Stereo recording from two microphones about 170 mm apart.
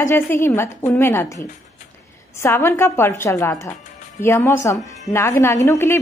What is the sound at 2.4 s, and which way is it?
A woman's voice, 15° left (ahead or behind).